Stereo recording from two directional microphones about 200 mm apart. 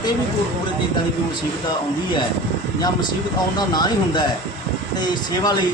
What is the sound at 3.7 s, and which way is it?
Speech, 20° left (ahead or behind).